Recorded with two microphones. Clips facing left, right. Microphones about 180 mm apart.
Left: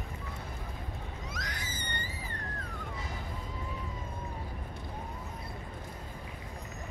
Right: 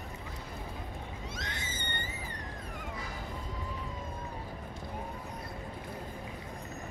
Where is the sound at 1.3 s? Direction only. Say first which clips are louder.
Even; 25° right (ahead or behind).